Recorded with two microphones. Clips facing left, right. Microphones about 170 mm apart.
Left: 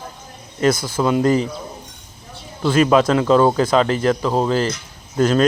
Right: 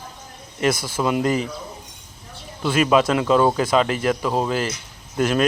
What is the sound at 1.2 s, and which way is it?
Speech, 40° left (ahead or behind).